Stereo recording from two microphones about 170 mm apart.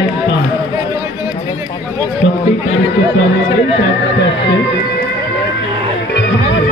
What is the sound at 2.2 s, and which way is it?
Run, 90° left.